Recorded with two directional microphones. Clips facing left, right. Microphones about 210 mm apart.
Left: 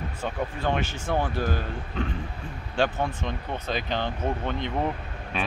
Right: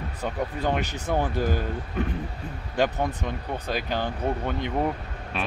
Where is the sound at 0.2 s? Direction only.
20° right (ahead or behind).